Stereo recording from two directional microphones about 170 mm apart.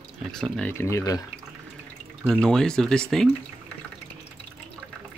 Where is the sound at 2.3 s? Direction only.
5° left (ahead or behind).